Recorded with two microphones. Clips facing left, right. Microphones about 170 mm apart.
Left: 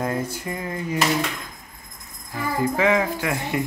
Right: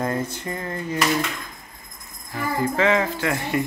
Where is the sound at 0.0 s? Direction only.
10° left (ahead or behind).